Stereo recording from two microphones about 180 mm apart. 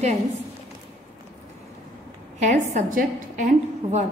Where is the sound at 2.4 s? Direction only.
40° right (ahead or behind).